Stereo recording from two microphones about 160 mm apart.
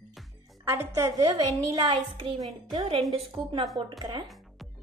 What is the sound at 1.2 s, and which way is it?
A woman's voice, 35° right (ahead or behind).